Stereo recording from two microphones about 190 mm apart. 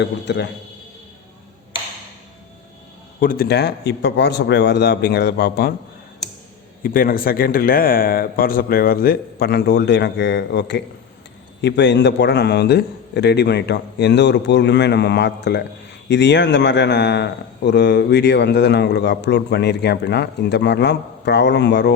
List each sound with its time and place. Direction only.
0.0 s a man's voice: 65° left (ahead or behind)
3.2 s a man's voice: 50° left (ahead or behind)
6.8 s a man's voice: 50° left (ahead or behind)